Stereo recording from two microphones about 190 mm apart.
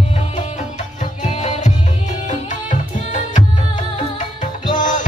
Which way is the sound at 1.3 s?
35° left (ahead or behind).